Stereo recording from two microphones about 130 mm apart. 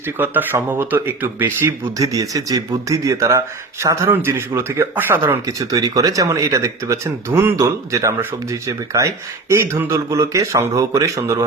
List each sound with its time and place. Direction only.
0.2 s speech: 15° right (ahead or behind)
5.5 s speech: 25° right (ahead or behind)